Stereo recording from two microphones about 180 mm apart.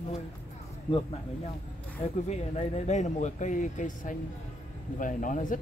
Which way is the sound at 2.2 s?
40° left (ahead or behind).